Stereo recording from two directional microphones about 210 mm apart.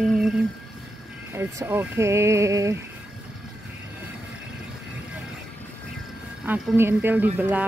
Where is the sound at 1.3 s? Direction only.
10° right (ahead or behind).